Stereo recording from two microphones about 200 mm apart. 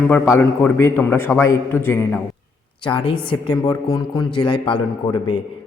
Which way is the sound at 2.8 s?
25° left (ahead or behind).